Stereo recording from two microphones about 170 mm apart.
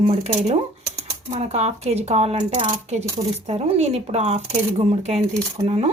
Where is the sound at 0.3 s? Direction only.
40° right (ahead or behind).